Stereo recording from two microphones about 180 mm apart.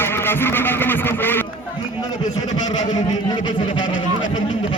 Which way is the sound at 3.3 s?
25° left (ahead or behind).